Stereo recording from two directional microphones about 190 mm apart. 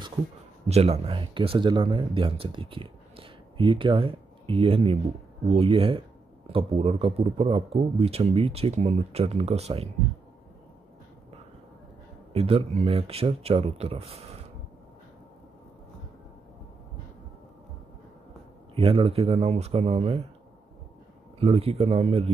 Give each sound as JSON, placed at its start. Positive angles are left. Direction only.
{"t": 0.7, "sound": "speech", "side_deg": -35}
{"t": 12.3, "sound": "speech", "side_deg": -30}
{"t": 18.8, "sound": "speech", "side_deg": -30}
{"t": 21.4, "sound": "speech", "side_deg": -30}